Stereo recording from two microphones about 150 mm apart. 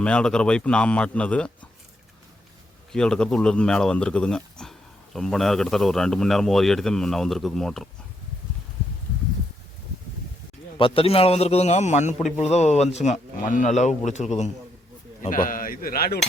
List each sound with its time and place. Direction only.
0.0 s a man's voice: 5° left (ahead or behind)
2.9 s a man's voice: 5° left (ahead or behind)
10.8 s a man's voice: 35° left (ahead or behind)
15.2 s speech: 65° left (ahead or behind); by 16.2 s 90° left